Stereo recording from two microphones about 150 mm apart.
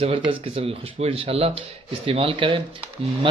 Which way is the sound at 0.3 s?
35° right (ahead or behind).